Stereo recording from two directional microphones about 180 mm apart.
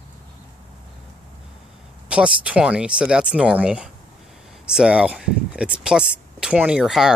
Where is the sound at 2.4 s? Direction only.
5° right (ahead or behind).